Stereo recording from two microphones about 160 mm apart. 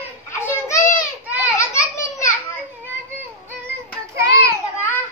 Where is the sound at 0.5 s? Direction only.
20° left (ahead or behind).